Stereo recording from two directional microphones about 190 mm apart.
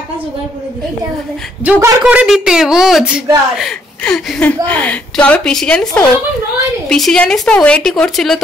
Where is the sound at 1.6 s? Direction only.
10° right (ahead or behind).